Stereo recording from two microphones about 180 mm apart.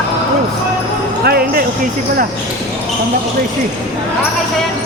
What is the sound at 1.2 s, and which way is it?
Basketball bounce, 60° right (ahead or behind).